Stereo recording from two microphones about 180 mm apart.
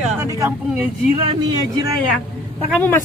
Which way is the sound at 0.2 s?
15° right (ahead or behind).